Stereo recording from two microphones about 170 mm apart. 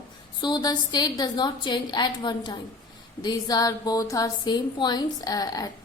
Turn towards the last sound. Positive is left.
turn(degrees=20)  # may be behind; listen again after turning